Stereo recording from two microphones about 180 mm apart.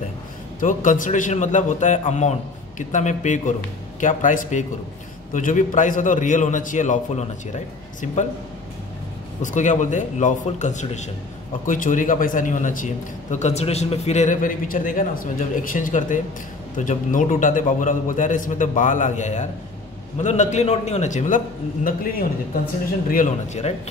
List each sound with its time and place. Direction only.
0.6 s a man's voice: 45° left (ahead or behind)
9.4 s a man's voice: 45° left (ahead or behind)
23.0 s a man's voice: 45° left (ahead or behind)